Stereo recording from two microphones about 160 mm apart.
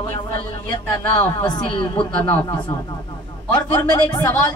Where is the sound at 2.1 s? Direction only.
10° left (ahead or behind).